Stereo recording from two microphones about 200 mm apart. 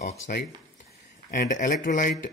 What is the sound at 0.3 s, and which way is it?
A man's voice, 50° left (ahead or behind).